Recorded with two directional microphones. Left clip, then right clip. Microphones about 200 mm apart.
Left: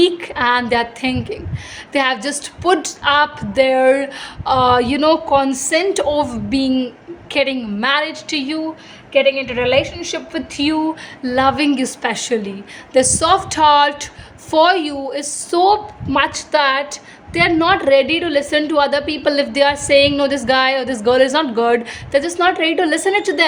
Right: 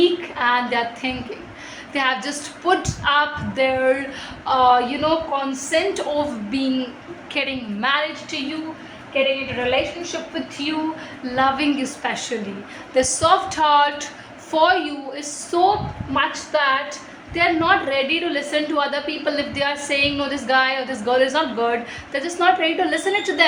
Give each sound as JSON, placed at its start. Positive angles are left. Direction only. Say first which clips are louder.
{"t": 0.0, "sound": "a woman's voice", "louder": "left 3 dB", "side_deg": 60}